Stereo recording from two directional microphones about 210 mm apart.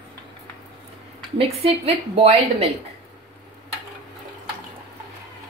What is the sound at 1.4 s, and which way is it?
A woman's voice, 25° right (ahead or behind).